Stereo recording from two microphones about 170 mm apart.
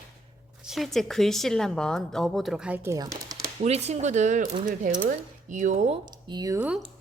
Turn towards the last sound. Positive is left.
turn(degrees=-5)  # may be behind; listen again after turning